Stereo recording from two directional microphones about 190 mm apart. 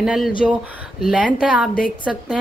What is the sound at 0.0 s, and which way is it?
Speech, centre (ahead or behind).